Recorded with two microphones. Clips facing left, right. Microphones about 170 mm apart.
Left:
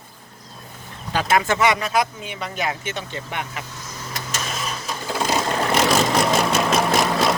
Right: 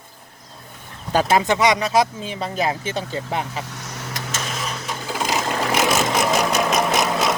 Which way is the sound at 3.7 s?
75° right (ahead or behind).